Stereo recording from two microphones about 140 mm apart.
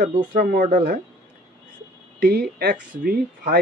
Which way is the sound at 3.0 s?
90° right.